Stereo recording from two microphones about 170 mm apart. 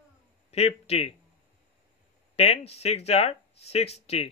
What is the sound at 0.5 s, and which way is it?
Speech, 35° left (ahead or behind).